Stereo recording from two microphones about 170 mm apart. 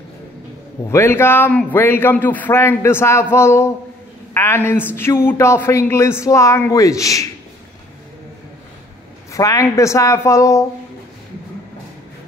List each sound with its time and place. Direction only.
0.8 s a man's voice: 15° left (ahead or behind)
9.3 s a man's voice: 20° left (ahead or behind)